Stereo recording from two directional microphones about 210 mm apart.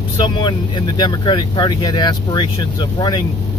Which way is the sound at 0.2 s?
20° left (ahead or behind).